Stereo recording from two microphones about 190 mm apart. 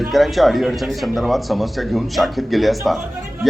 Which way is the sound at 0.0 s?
Centre (ahead or behind).